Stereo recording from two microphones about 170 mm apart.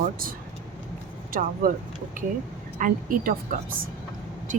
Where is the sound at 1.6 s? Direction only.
60° right (ahead or behind).